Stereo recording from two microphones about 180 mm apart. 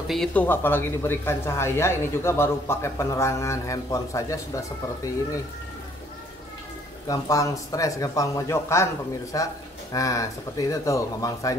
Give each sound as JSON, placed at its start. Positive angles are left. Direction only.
{"t": 0.1, "sound": "speech", "side_deg": 5}
{"t": 7.1, "sound": "speech", "side_deg": 20}